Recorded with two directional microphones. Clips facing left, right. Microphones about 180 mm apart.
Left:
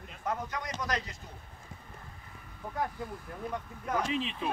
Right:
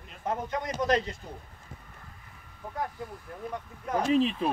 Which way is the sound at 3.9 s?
40° right (ahead or behind).